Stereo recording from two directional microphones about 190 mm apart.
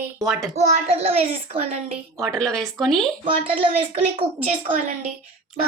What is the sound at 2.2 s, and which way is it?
Speech, 5° left (ahead or behind).